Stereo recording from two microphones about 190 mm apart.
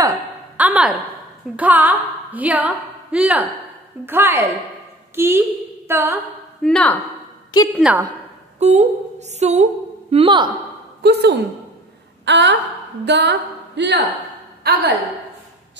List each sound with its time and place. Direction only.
0.0 s a sound: 15° right (ahead or behind)
1.6 s a woman's voice: 10° right (ahead or behind)
6.6 s speech: 5° left (ahead or behind)
8.5 s a woman's voice: 35° right (ahead or behind)
10.1 s a woman's voice: 25° right (ahead or behind)
11.0 s a woman's voice: 60° right (ahead or behind)